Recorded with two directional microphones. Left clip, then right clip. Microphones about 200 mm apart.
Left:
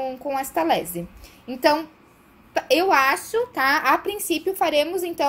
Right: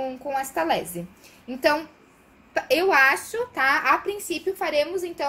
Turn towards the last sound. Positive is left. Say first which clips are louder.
# left 3 dB
turn(degrees=40)  # may be behind; listen again after turning